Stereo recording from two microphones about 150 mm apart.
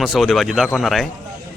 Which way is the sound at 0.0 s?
Centre (ahead or behind).